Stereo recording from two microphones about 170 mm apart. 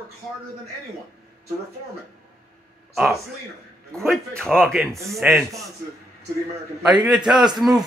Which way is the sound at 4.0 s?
5° left (ahead or behind).